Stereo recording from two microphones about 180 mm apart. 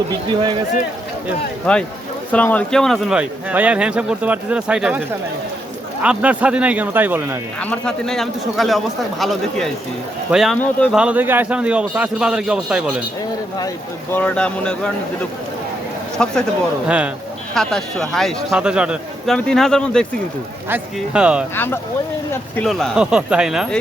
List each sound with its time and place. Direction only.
0.1 s speech: 25° right (ahead or behind)
1.7 s speech: 5° left (ahead or behind); by 7.3 s 10° right (ahead or behind)
7.6 s speech: 5° left (ahead or behind)
10.9 s speech: 5° right (ahead or behind)
14.1 s speech: 10° left (ahead or behind)
16.1 s a man's voice: 5° left (ahead or behind)
17.5 s speech: centre (ahead or behind)
20.7 s speech: 10° right (ahead or behind)
21.5 s speech: 10° left (ahead or behind)